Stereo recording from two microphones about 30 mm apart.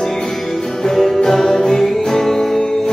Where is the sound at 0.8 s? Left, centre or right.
Centre.